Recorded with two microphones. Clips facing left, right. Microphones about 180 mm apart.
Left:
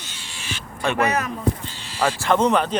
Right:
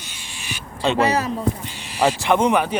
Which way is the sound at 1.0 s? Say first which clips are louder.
Right 2 dB; 30° right (ahead or behind).